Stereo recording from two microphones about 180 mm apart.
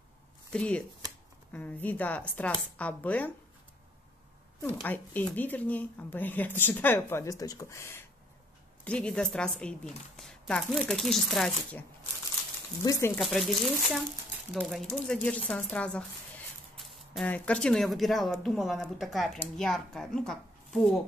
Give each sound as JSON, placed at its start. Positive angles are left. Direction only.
{"t": 0.5, "sound": "speech", "side_deg": 5}
{"t": 4.6, "sound": "speech", "side_deg": 10}
{"t": 12.8, "sound": "speech", "side_deg": 20}
{"t": 13.2, "sound": "speech", "side_deg": 0}
{"t": 17.1, "sound": "speech", "side_deg": 5}